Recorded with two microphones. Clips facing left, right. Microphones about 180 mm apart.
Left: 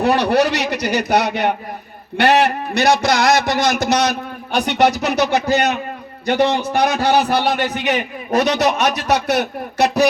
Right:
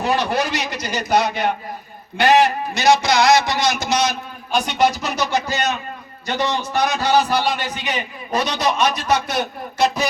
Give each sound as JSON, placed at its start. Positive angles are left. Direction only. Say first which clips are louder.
{"t": 0.0, "sound": "a man's voice", "louder": "left 5 dB", "side_deg": 65}